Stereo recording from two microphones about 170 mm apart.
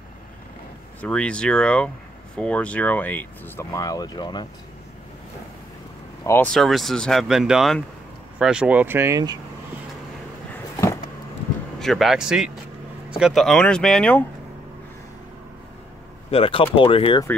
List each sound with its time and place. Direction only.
1.0 s speech: 5° left (ahead or behind)
3.7 s speech: 20° left (ahead or behind)
6.2 s speech: 15° left (ahead or behind)
6.5 s speech: centre (ahead or behind)
11.8 s speech: centre (ahead or behind)
16.3 s speech: 35° left (ahead or behind)